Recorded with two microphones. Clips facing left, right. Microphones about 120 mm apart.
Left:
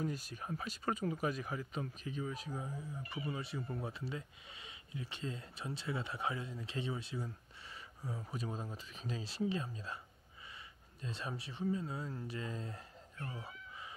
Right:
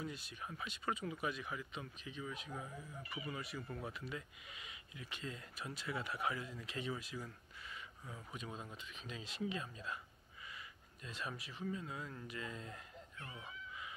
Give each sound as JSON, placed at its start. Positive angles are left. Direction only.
{"t": 0.0, "sound": "speech", "side_deg": 40}
{"t": 11.0, "sound": "speech", "side_deg": 30}